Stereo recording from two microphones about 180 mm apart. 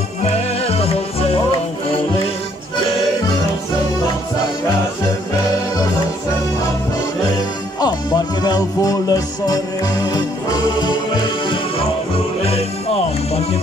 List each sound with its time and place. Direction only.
0.2 s music: 35° left (ahead or behind)
7.8 s music: 25° left (ahead or behind)
12.4 s music: 35° left (ahead or behind)